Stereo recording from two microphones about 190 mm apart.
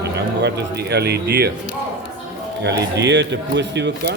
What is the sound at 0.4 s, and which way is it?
Speech, 60° right (ahead or behind).